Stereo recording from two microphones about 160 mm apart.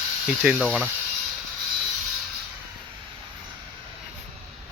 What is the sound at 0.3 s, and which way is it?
Speech, 5° right (ahead or behind).